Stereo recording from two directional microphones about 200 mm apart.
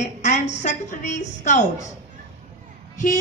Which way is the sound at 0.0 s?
35° left (ahead or behind).